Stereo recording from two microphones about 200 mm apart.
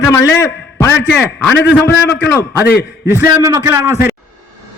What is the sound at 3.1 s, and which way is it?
Speech, 10° right (ahead or behind).